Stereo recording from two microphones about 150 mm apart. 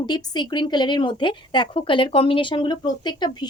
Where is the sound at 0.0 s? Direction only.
30° left (ahead or behind).